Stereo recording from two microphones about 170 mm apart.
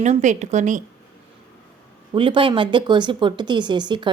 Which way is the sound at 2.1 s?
30° right (ahead or behind).